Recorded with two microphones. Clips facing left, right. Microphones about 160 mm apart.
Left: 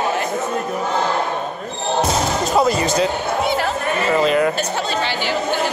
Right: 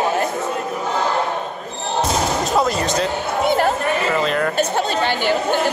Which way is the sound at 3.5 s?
50° right (ahead or behind).